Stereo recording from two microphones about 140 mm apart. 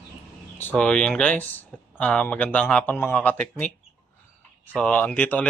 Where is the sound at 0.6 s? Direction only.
10° left (ahead or behind).